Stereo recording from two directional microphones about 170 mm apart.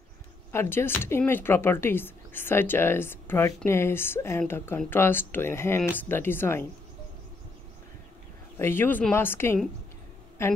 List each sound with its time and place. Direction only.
0.5 s speech: 15° left (ahead or behind)
8.5 s speech: 15° left (ahead or behind)